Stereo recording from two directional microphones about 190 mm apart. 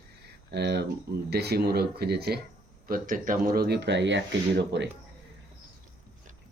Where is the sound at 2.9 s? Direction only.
45° right (ahead or behind); by 4.8 s 65° right (ahead or behind).